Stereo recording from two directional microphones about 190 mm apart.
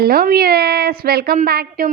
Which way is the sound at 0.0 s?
55° right (ahead or behind).